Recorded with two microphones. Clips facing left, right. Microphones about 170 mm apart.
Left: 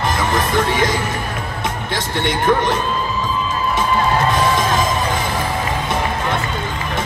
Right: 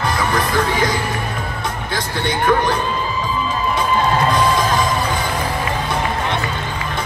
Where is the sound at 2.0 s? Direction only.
20° left (ahead or behind).